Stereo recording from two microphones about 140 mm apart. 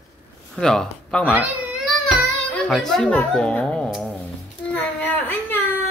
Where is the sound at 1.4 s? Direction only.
10° right (ahead or behind).